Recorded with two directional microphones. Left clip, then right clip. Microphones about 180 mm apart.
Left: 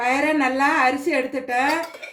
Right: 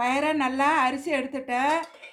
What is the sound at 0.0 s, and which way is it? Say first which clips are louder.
Speech: left 4 dB; 45° right (ahead or behind).